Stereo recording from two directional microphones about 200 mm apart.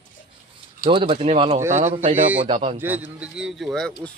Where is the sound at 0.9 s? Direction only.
25° right (ahead or behind).